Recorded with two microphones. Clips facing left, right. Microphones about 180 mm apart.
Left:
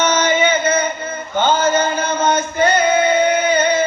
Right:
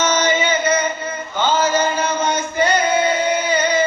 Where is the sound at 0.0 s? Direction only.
55° left (ahead or behind).